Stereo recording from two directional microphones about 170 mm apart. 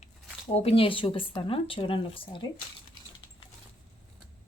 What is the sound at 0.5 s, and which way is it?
Speech, 35° left (ahead or behind).